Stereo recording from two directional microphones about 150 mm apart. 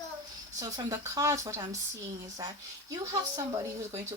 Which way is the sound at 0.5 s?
20° right (ahead or behind).